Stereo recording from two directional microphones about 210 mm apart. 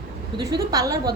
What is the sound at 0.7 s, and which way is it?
Speech, 15° right (ahead or behind).